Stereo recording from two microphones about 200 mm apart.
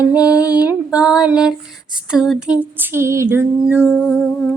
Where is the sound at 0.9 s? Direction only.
5° right (ahead or behind).